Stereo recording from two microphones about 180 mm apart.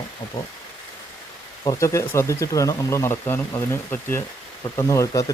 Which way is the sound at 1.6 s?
20° left (ahead or behind).